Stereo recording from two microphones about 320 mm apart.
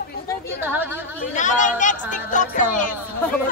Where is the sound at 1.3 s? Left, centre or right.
Left.